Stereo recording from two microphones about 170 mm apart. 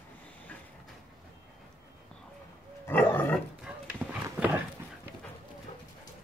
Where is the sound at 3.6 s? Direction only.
10° right (ahead or behind).